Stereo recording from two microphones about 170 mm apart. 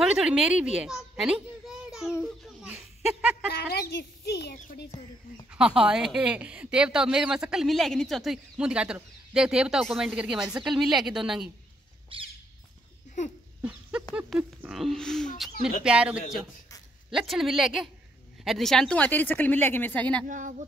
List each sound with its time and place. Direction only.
0.0 s a woman's voice: 5° right (ahead or behind)
2.4 s a sound: 10° right (ahead or behind)
3.5 s a child's voice: 70° left (ahead or behind)
5.5 s speech: 5° right (ahead or behind)
12.1 s squawk: 30° right (ahead or behind)
13.6 s a sound: 5° right (ahead or behind)
14.1 s speech: 5° right (ahead or behind)
20.2 s speech: 50° right (ahead or behind)